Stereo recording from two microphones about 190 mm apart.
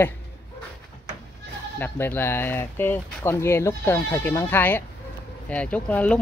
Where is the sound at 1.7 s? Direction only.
10° left (ahead or behind).